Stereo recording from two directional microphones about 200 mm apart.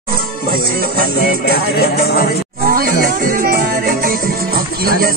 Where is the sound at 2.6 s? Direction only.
45° right (ahead or behind).